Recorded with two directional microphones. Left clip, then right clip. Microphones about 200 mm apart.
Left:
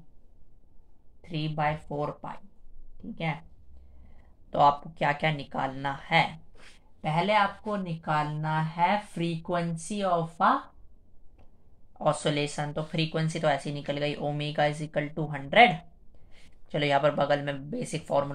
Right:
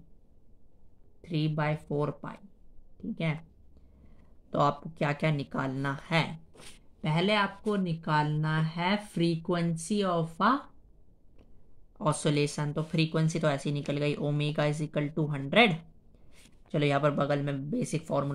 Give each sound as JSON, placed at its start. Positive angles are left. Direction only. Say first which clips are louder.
{"t": 1.2, "sound": "speech", "louder": "left 2 dB", "side_deg": -45}
{"t": 4.5, "sound": "speech", "louder": "left 6 dB", "side_deg": -40}
{"t": 12.0, "sound": "speech", "louder": "left 2 dB", "side_deg": -35}